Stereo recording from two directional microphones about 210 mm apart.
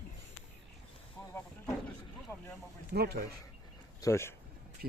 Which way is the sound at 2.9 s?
50° right (ahead or behind).